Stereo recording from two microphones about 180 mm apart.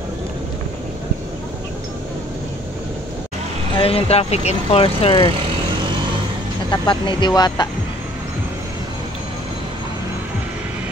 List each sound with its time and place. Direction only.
3.7 s speech: 30° left (ahead or behind)
6.7 s speech: 25° left (ahead or behind)